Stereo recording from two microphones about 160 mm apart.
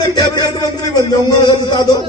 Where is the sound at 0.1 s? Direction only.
25° left (ahead or behind).